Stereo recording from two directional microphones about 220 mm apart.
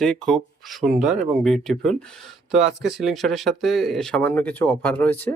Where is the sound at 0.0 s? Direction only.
Centre (ahead or behind).